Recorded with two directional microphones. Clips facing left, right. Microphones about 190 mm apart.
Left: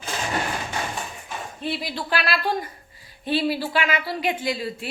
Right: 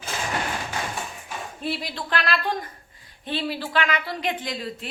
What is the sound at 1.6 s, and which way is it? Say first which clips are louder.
A woman's voice: left 1 dB; centre (ahead or behind).